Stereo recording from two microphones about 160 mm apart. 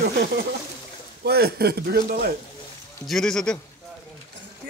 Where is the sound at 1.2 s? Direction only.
85° right.